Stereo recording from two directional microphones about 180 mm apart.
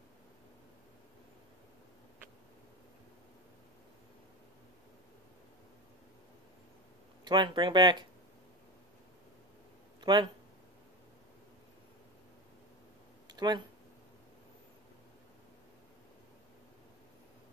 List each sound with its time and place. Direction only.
7.2 s speech: 25° right (ahead or behind)
9.9 s speech: 25° right (ahead or behind)
13.4 s speech: 25° right (ahead or behind)